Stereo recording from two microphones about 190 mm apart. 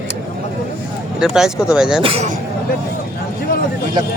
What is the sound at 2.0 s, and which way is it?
Speech, 30° right (ahead or behind).